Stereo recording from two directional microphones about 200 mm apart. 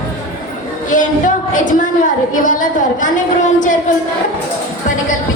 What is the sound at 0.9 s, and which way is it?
A woman's voice, 40° left (ahead or behind).